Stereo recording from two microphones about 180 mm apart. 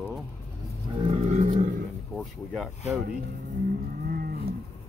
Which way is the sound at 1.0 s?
40° right (ahead or behind).